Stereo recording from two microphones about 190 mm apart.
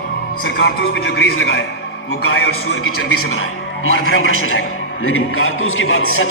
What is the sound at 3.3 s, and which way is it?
A man's voice, 90° left.